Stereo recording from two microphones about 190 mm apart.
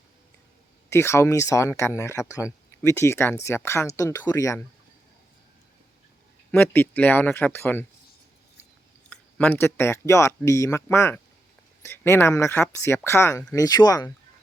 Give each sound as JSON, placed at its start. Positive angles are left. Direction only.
{"t": 0.9, "sound": "speech", "side_deg": 15}
{"t": 6.5, "sound": "speech", "side_deg": 10}
{"t": 9.0, "sound": "speech", "side_deg": 10}